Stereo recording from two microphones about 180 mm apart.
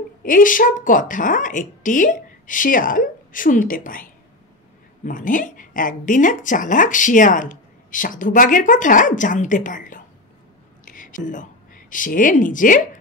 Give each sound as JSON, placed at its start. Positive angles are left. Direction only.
{"t": 0.2, "sound": "a woman's voice", "side_deg": 50}